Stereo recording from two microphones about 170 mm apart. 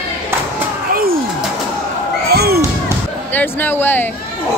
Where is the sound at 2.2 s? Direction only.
65° right (ahead or behind).